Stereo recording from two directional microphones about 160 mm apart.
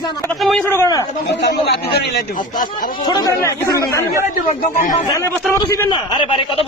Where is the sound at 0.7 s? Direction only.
20° left (ahead or behind).